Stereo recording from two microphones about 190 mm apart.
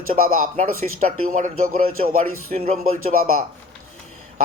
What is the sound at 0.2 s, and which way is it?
Speech, 45° right (ahead or behind).